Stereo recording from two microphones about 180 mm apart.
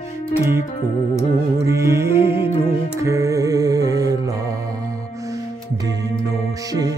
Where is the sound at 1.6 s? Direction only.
15° right (ahead or behind).